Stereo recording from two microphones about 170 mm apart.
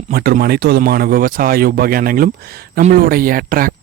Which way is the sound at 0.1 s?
60° right (ahead or behind).